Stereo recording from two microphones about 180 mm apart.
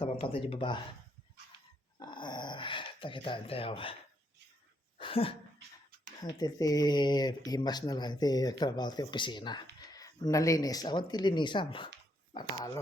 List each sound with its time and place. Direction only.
0.0 s speech: 30° left (ahead or behind)
2.0 s dog: 25° left (ahead or behind)
4.9 s speech: 30° left (ahead or behind)
6.2 s speech: 20° left (ahead or behind)